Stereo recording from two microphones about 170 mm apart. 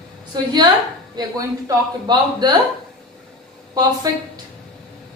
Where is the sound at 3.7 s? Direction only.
20° right (ahead or behind).